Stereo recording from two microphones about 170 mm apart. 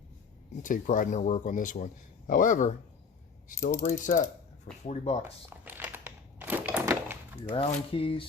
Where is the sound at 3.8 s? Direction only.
50° left (ahead or behind).